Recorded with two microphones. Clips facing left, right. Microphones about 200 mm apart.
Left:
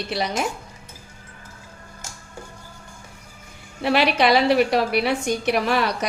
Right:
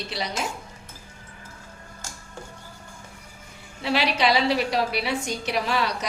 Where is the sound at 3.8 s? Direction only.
55° left (ahead or behind).